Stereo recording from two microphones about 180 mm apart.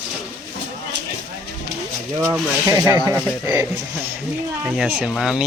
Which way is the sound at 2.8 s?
15° right (ahead or behind).